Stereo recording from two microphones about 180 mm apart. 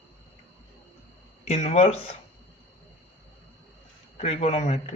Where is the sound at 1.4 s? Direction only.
35° left (ahead or behind).